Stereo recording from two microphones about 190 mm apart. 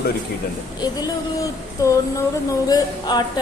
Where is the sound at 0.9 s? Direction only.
15° left (ahead or behind).